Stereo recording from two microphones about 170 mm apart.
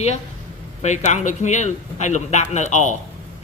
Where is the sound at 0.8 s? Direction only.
45° left (ahead or behind).